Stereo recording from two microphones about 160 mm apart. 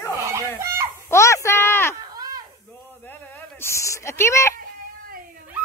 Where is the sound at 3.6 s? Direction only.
20° left (ahead or behind).